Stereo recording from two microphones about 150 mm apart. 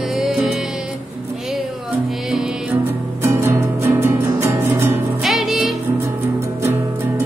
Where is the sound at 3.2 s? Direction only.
15° right (ahead or behind).